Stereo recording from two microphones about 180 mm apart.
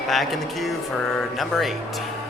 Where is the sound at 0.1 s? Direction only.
Centre (ahead or behind).